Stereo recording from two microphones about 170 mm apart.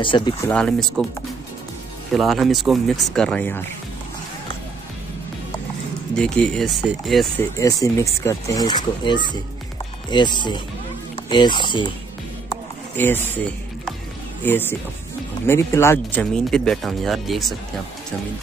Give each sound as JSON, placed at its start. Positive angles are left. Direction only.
{"t": 0.0, "sound": "speech", "side_deg": 30}
{"t": 0.5, "sound": "speech", "side_deg": 5}
{"t": 2.1, "sound": "speech", "side_deg": 0}
{"t": 6.1, "sound": "speech", "side_deg": 5}
{"t": 7.3, "sound": "speech", "side_deg": 20}
{"t": 10.1, "sound": "speech", "side_deg": 25}
{"t": 12.9, "sound": "speech", "side_deg": 10}
{"t": 14.4, "sound": "speech", "side_deg": 10}
{"t": 16.3, "sound": "speech", "side_deg": 5}